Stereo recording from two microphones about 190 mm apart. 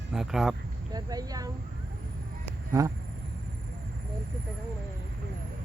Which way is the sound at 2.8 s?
20° right (ahead or behind).